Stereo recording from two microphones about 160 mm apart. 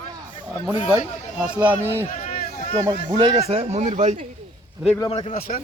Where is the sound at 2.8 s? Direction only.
30° right (ahead or behind).